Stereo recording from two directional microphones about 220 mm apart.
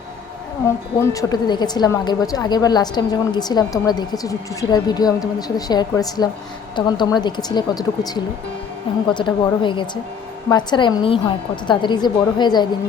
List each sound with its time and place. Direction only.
1.1 s a woman's voice: 20° left (ahead or behind)